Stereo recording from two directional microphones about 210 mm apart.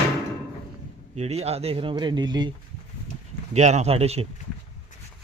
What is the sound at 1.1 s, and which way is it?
Speech, 30° right (ahead or behind).